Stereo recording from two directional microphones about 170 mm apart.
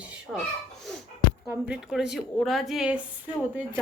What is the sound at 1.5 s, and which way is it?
A woman's voice, 5° right (ahead or behind).